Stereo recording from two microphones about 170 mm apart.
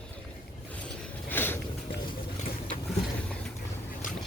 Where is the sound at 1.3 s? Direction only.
10° left (ahead or behind).